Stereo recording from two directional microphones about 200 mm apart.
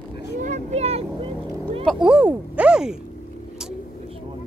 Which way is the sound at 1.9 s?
5° right (ahead or behind).